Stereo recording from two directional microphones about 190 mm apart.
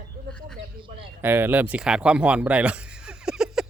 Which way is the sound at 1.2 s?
10° right (ahead or behind).